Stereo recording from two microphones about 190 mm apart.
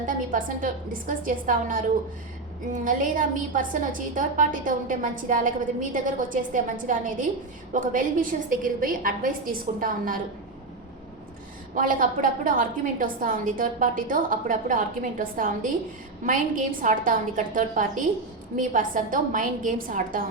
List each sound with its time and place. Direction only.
0.0 s a woman's voice: 45° right (ahead or behind)
11.7 s a woman's voice: 45° right (ahead or behind)